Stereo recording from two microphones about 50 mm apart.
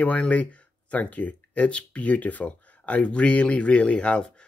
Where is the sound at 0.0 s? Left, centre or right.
Left.